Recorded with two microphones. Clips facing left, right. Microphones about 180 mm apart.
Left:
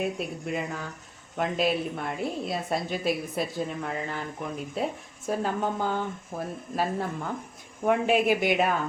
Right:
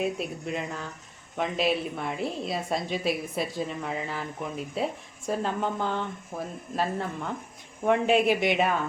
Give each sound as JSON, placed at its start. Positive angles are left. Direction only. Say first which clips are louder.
{"t": 0.0, "sound": "a woman's voice", "louder": "right 1 dB", "side_deg": 0}